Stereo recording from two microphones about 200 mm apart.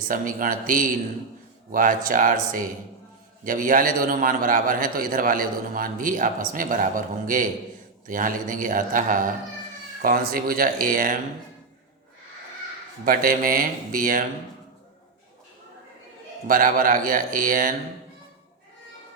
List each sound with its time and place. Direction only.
0.1 s a man's voice: 45° right (ahead or behind)
13.1 s a man's voice: 45° right (ahead or behind)
16.5 s a man's voice: 45° right (ahead or behind)